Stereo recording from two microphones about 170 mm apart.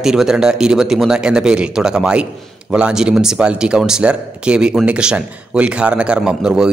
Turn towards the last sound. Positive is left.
turn(degrees=-5)  # may be behind; listen again after turning